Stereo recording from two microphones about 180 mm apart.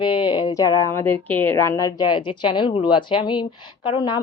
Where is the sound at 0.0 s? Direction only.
25° left (ahead or behind).